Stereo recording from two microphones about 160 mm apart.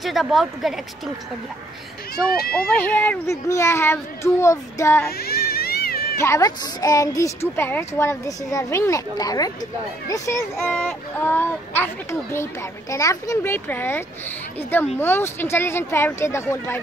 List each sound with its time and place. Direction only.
0.0 s a woman's voice: centre (ahead or behind)
2.5 s speech: 10° left (ahead or behind)
5.1 s baby cry: 75° left (ahead or behind)
6.1 s a woman's voice: 20° left (ahead or behind)